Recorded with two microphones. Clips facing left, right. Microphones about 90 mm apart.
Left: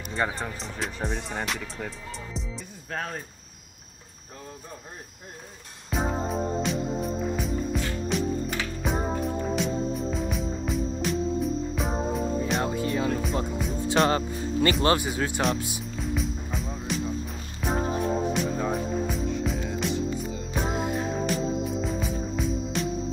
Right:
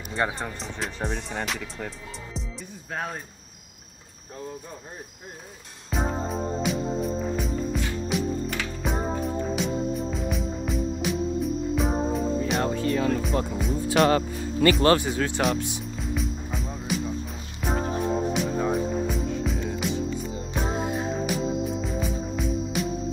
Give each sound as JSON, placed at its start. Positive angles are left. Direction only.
{"t": 0.4, "sound": "speech", "side_deg": 0}
{"t": 2.9, "sound": "cricket", "side_deg": -15}
{"t": 5.9, "sound": "music", "side_deg": 0}
{"t": 12.7, "sound": "music", "side_deg": 15}
{"t": 14.0, "sound": "speech", "side_deg": 30}
{"t": 14.9, "sound": "speech", "side_deg": 15}
{"t": 15.4, "sound": "music", "side_deg": 5}